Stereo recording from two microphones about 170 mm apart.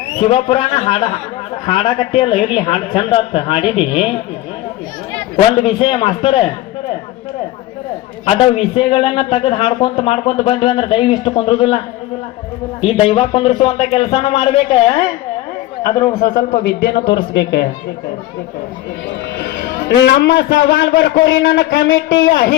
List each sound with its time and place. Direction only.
0.2 s a man's voice: 35° left (ahead or behind)
5.6 s a man's voice: 30° left (ahead or behind)
8.2 s a man's voice: 30° left (ahead or behind)
12.8 s a man's voice: 30° left (ahead or behind)
16.6 s a man's voice: 90° left
19.5 s a man's voice: 85° left